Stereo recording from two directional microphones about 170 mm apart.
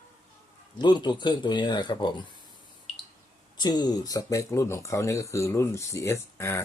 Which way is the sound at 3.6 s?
25° left (ahead or behind).